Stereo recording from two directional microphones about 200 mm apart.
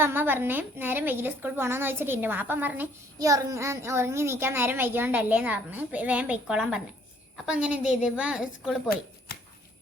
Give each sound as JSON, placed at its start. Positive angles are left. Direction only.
{"t": 0.0, "sound": "a woman's voice", "side_deg": -10}